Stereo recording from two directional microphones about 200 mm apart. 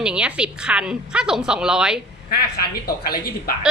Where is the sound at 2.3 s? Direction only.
50° left (ahead or behind).